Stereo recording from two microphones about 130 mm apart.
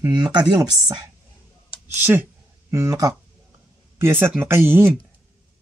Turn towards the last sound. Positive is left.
turn(degrees=-15)  # may be behind; listen again after turning